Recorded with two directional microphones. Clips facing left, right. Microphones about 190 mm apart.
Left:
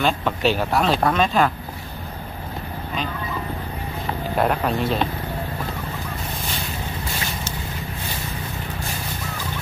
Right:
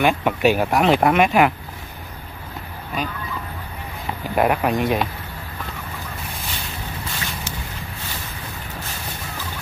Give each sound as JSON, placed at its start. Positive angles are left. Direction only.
{"t": 0.0, "sound": "speech", "side_deg": -15}
{"t": 4.4, "sound": "speech", "side_deg": -10}